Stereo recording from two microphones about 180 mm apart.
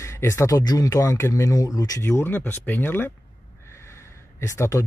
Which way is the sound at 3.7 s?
15° left (ahead or behind).